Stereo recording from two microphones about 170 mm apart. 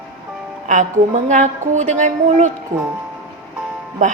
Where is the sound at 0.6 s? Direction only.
45° right (ahead or behind).